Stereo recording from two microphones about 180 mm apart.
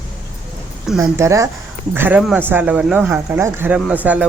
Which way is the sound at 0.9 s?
15° right (ahead or behind).